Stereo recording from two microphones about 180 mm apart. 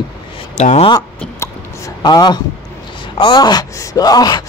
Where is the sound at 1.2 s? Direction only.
15° left (ahead or behind).